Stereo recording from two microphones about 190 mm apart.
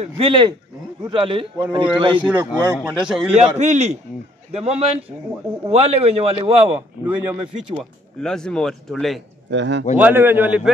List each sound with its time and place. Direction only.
0.0 s a man's voice: 25° right (ahead or behind)
2.2 s speech: 5° right (ahead or behind)
3.3 s a man's voice: 35° right (ahead or behind)
6.7 s speech: 10° right (ahead or behind)
8.2 s speech: 5° left (ahead or behind)
9.5 s speech: 70° right (ahead or behind)
9.9 s speech: 10° right (ahead or behind)